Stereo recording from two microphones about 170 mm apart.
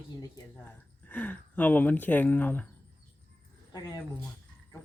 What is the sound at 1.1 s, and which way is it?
Speech, 10° left (ahead or behind).